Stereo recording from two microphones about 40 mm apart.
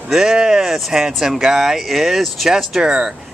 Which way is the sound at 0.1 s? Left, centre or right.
Centre.